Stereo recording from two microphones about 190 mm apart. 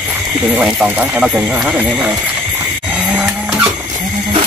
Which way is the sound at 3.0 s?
5° right (ahead or behind).